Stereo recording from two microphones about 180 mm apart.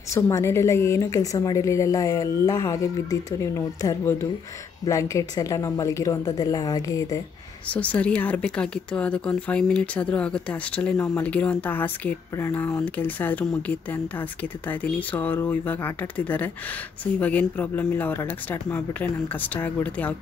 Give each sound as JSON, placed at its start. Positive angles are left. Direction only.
{"t": 0.1, "sound": "speech", "side_deg": 15}
{"t": 7.6, "sound": "speech", "side_deg": 5}